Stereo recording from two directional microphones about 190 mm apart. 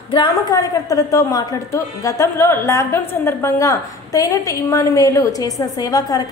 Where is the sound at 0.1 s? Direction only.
25° left (ahead or behind).